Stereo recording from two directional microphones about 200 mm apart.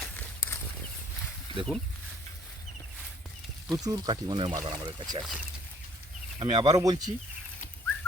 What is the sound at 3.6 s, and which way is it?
Speech, 20° right (ahead or behind).